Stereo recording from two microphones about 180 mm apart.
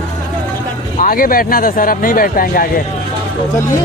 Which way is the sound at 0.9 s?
50° left (ahead or behind).